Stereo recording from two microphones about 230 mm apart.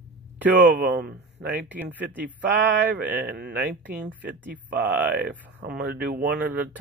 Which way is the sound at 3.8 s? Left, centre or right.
Centre.